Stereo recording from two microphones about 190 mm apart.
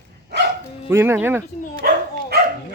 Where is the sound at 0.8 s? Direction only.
10° right (ahead or behind).